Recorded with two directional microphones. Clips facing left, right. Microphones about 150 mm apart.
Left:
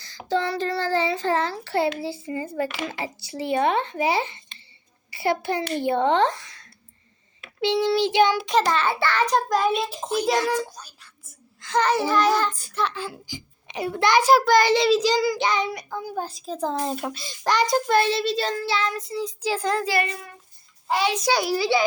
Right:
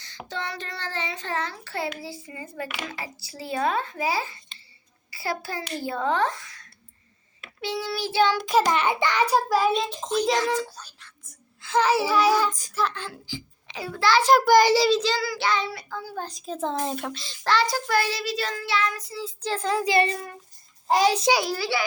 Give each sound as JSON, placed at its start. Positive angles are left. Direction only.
{"t": 0.0, "sound": "a child's voice", "side_deg": 35}
{"t": 8.6, "sound": "a child's voice", "side_deg": -15}
{"t": 11.6, "sound": "a child's voice", "side_deg": -5}
{"t": 12.7, "sound": "a child's voice", "side_deg": 0}
{"t": 14.4, "sound": "a child's voice", "side_deg": -10}
{"t": 14.8, "sound": "a child's voice", "side_deg": 10}
{"t": 16.2, "sound": "a child's voice", "side_deg": 0}
{"t": 19.5, "sound": "a child's voice", "side_deg": 0}
{"t": 19.8, "sound": "speech", "side_deg": -20}
{"t": 20.1, "sound": "a child's voice", "side_deg": -40}
{"t": 21.4, "sound": "a child's voice", "side_deg": 15}